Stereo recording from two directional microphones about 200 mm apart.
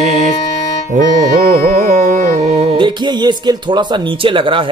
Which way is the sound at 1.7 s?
40° right (ahead or behind).